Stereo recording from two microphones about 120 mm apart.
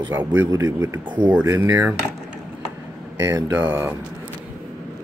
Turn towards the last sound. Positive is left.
turn(degrees=-15)  # may be behind; listen again after turning